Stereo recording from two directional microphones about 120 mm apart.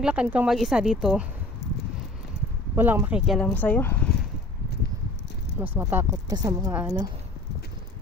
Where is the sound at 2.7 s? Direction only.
15° right (ahead or behind).